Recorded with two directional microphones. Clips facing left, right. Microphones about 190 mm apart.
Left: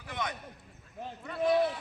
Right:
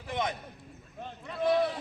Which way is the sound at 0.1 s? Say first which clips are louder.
Right 4 dB; 25° right (ahead or behind).